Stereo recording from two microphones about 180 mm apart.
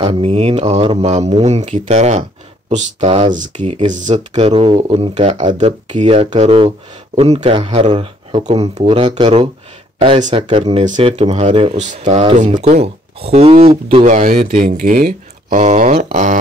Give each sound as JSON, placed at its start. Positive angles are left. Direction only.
{"t": 0.0, "sound": "speech", "side_deg": -30}
{"t": 3.3, "sound": "speech", "side_deg": -45}
{"t": 12.0, "sound": "speech", "side_deg": -30}
{"t": 14.4, "sound": "speech", "side_deg": -55}
{"t": 15.5, "sound": "a sound", "side_deg": -40}